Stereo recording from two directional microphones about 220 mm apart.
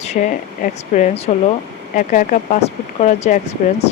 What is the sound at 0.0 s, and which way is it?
Speech, 30° left (ahead or behind).